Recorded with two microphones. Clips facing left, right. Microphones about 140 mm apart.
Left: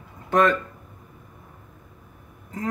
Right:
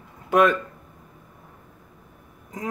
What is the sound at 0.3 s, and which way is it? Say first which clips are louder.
Speech: right 1 dB; 10° right (ahead or behind).